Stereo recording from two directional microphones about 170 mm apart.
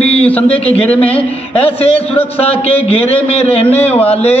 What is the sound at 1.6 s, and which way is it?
A man's voice, 35° left (ahead or behind).